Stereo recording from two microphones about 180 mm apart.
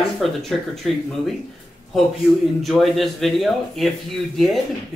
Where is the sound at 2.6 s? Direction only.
Centre (ahead or behind).